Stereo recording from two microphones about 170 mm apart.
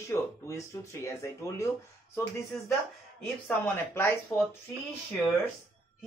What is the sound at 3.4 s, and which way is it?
Speech, 10° left (ahead or behind).